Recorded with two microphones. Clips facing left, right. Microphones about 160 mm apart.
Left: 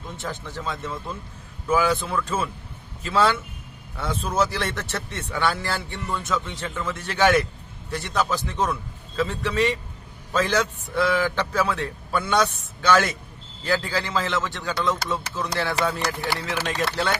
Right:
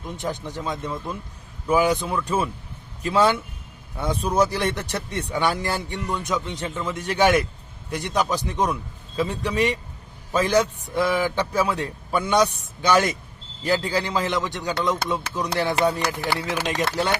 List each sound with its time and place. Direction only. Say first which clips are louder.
0.2 s speech: right 4 dB; 15° right (ahead or behind)